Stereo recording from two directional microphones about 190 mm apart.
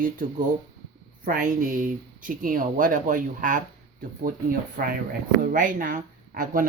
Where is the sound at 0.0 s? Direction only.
45° right (ahead or behind).